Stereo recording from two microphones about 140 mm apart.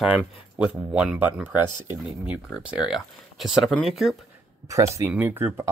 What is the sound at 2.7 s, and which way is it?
Speech, centre (ahead or behind).